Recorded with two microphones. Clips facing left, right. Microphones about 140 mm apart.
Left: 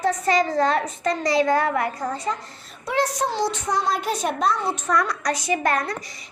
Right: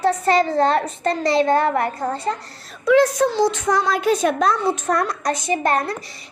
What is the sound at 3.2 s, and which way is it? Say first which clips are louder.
Speech: right 6 dB; 90° right.